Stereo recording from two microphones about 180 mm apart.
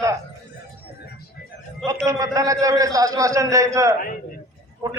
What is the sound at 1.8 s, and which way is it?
A man's voice, 15° right (ahead or behind).